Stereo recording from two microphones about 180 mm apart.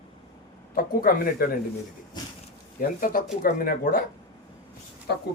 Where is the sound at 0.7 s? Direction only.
55° left (ahead or behind).